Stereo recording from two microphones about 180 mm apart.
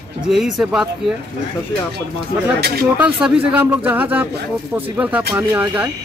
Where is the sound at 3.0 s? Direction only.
5° right (ahead or behind).